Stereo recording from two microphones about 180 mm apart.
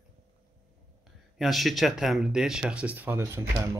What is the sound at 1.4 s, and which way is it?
Speech, centre (ahead or behind).